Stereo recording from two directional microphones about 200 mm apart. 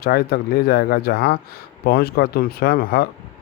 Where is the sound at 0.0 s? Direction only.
50° left (ahead or behind).